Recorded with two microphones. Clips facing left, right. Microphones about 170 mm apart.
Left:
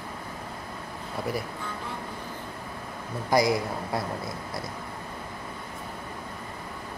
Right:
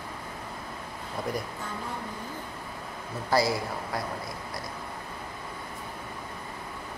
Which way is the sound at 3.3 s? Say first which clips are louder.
Left 3 dB; 20° left (ahead or behind).